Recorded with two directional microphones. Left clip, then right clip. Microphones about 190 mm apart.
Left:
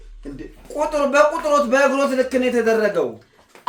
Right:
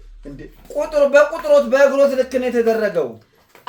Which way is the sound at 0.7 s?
15° left (ahead or behind).